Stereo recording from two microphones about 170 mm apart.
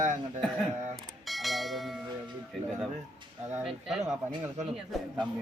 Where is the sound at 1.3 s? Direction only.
Centre (ahead or behind).